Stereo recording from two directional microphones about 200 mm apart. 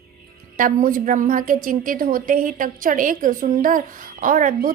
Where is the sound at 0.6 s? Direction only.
45° right (ahead or behind).